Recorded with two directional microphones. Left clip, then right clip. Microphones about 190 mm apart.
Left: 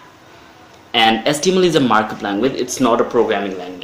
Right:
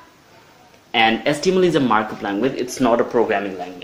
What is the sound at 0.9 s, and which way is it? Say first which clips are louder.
Speech: left 3 dB; 10° right (ahead or behind).